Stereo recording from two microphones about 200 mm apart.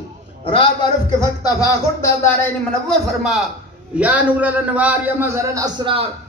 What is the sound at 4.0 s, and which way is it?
A man's voice, 5° right (ahead or behind).